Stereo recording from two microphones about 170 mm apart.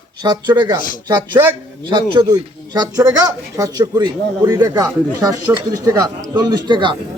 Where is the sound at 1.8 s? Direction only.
25° right (ahead or behind).